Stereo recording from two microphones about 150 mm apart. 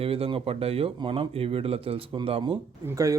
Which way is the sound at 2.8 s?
20° right (ahead or behind).